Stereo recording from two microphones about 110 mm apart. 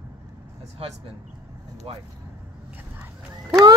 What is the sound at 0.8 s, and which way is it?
Speech, 60° right (ahead or behind).